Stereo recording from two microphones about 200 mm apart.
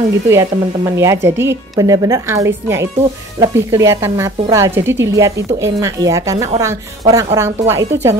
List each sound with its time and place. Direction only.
0.3 s a woman's voice: 15° right (ahead or behind)